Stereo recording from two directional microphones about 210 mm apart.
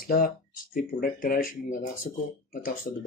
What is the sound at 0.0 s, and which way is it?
Speech, 45° left (ahead or behind).